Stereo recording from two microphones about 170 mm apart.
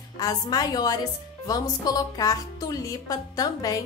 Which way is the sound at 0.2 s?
25° left (ahead or behind).